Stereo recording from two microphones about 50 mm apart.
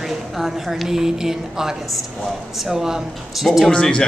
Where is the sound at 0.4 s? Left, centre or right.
Centre.